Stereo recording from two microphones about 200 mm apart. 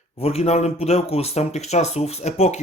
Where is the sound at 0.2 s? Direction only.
30° left (ahead or behind).